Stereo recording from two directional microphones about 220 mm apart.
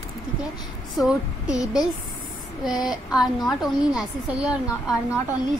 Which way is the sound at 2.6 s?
Centre (ahead or behind).